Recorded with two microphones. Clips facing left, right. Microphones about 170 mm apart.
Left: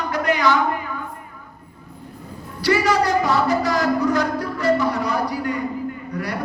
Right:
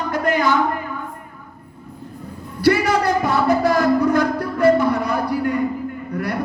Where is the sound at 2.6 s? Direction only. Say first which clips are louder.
Right 2 dB; 55° right (ahead or behind).